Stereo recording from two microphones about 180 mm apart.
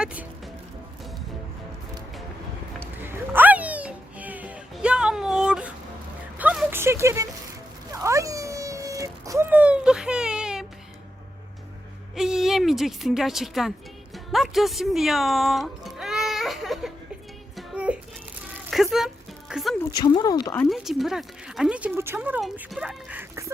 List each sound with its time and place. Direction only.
0.0 s speech: 10° right (ahead or behind)
2.8 s a sound: 10° right (ahead or behind)
12.1 s a sound: 5° right (ahead or behind)
17.6 s music: 5° right (ahead or behind)
19.8 s speech: 25° left (ahead or behind)
20.7 s speech: centre (ahead or behind)